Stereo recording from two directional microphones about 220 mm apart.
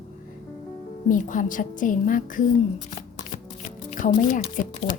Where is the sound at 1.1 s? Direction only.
35° left (ahead or behind).